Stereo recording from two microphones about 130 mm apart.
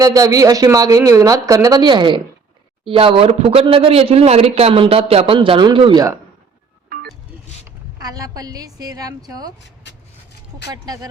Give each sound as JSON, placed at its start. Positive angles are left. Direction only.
{"t": 0.0, "sound": "speech", "side_deg": -30}
{"t": 8.0, "sound": "speech", "side_deg": -30}
{"t": 10.7, "sound": "speech", "side_deg": -30}